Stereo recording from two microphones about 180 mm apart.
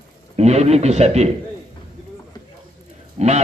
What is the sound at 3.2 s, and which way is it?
Speech, 35° right (ahead or behind).